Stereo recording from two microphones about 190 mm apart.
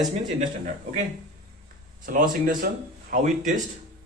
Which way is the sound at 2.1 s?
45° right (ahead or behind).